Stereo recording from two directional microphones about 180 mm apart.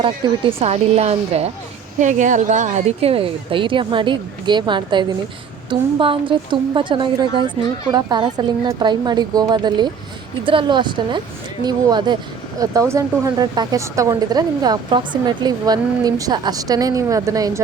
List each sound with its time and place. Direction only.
0.2 s a woman's voice: 25° right (ahead or behind)